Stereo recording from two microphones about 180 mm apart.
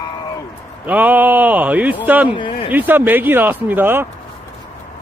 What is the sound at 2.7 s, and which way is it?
Speech, 10° right (ahead or behind).